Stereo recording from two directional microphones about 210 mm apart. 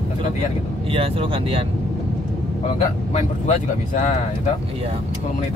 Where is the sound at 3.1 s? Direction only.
35° left (ahead or behind).